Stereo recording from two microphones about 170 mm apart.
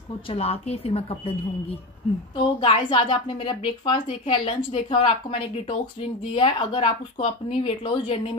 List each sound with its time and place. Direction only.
0.3 s a woman's voice: 35° left (ahead or behind)